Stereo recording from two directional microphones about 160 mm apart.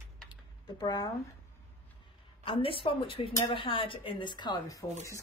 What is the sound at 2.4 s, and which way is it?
Speech, 35° left (ahead or behind).